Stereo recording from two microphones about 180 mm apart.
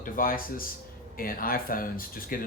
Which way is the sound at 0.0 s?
50° left (ahead or behind).